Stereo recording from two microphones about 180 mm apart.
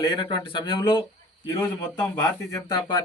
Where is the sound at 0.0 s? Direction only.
25° left (ahead or behind).